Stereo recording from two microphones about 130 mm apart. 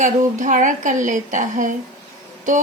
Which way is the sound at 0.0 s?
75° right (ahead or behind).